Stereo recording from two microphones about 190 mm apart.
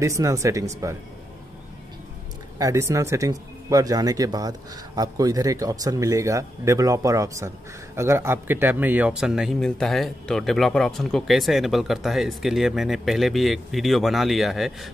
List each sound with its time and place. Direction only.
0.0 s speech: 15° right (ahead or behind)
2.6 s speech: 15° right (ahead or behind)